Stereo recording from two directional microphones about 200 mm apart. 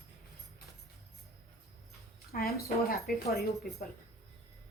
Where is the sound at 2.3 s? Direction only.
50° left (ahead or behind).